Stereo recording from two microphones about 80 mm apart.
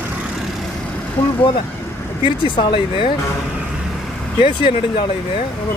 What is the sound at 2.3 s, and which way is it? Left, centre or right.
Speech, left.